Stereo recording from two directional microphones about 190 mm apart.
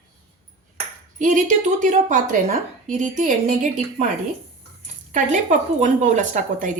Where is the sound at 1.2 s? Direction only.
40° right (ahead or behind).